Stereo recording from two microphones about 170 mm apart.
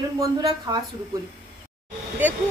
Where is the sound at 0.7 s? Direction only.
25° right (ahead or behind).